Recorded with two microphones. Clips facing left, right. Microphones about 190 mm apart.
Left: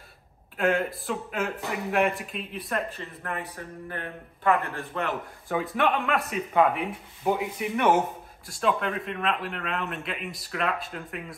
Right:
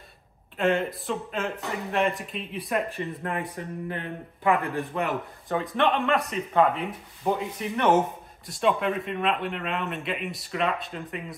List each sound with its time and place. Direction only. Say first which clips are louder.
0.6 s a man's voice: right 1 dB; centre (ahead or behind)
3.0 s a man's voice: right 5 dB; 20° right (ahead or behind)
5.0 s a man's voice: right 2 dB; 5° left (ahead or behind)